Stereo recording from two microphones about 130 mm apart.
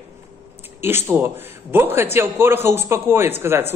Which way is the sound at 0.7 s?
20° right (ahead or behind).